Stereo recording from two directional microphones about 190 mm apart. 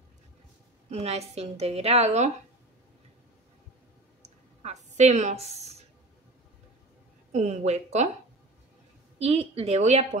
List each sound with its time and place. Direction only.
0.8 s a woman's voice: 35° right (ahead or behind)
4.2 s a sound: 35° right (ahead or behind)
7.3 s a woman's voice: 40° right (ahead or behind)
9.2 s a woman's voice: 35° right (ahead or behind)